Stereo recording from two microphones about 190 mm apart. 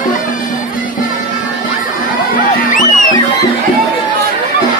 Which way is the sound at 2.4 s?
45° left (ahead or behind).